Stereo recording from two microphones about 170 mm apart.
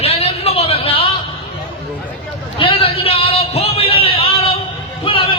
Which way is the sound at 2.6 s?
30° left (ahead or behind).